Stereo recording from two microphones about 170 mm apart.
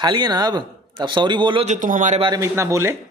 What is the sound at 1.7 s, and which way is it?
Speech, 50° right (ahead or behind).